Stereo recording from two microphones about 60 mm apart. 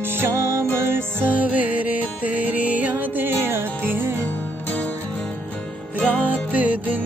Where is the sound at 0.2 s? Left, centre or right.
Right.